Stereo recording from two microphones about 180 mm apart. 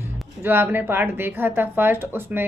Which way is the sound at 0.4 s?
10° right (ahead or behind).